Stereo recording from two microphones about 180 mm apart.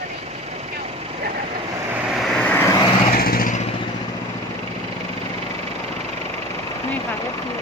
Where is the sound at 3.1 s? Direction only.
55° left (ahead or behind).